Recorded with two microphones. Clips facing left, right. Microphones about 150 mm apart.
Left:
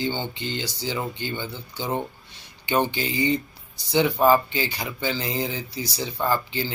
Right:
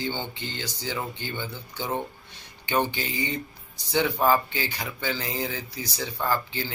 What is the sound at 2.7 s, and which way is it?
Speech, 20° left (ahead or behind).